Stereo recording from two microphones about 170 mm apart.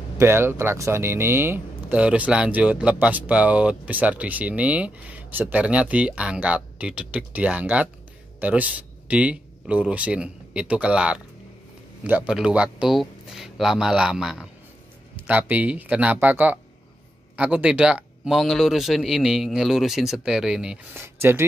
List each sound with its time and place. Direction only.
0.2 s speech: 15° right (ahead or behind)
12.3 s speech: 5° right (ahead or behind)